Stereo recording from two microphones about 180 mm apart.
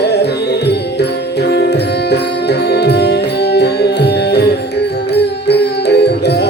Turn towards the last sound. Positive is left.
turn(degrees=70)  # may be behind; listen again after turning